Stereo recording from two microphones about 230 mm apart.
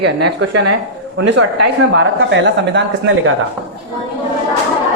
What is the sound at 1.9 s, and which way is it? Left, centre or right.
Speech, right.